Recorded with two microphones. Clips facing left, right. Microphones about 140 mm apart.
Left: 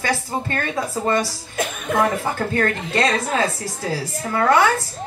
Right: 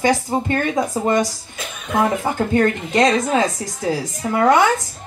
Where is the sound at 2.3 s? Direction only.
20° right (ahead or behind).